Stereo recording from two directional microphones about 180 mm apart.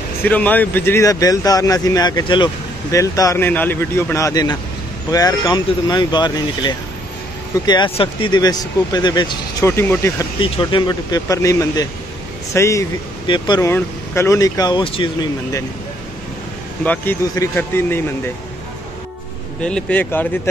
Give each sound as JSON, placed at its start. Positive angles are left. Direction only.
{"t": 0.2, "sound": "speech", "side_deg": 10}
{"t": 9.7, "sound": "speech", "side_deg": 15}
{"t": 10.4, "sound": "speech", "side_deg": 25}
{"t": 16.8, "sound": "speech", "side_deg": 10}
{"t": 19.6, "sound": "speech", "side_deg": 5}